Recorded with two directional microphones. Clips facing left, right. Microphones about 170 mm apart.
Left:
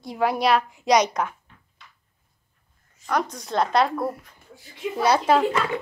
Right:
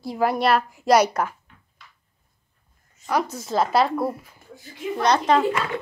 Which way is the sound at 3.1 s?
5° right (ahead or behind).